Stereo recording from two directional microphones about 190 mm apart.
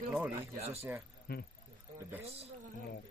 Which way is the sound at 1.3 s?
55° left (ahead or behind).